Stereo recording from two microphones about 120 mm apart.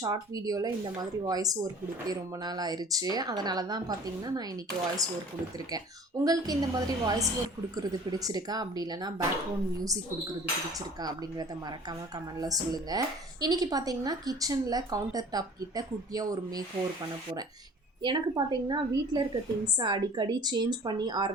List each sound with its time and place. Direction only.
0.0 s a woman's voice: 30° right (ahead or behind)
6.2 s a woman's voice: 30° right (ahead or behind)
10.8 s a woman's voice: 35° right (ahead or behind)
18.0 s a woman's voice: 40° right (ahead or behind)